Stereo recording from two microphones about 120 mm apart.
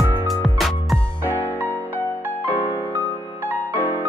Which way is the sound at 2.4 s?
15° right (ahead or behind).